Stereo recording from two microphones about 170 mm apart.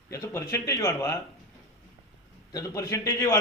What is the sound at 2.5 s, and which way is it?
Speech, 20° left (ahead or behind).